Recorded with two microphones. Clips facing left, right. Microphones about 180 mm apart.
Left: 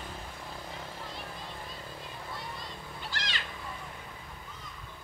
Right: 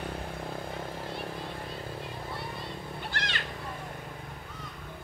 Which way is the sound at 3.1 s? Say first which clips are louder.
Right 1 dB; 55° right (ahead or behind).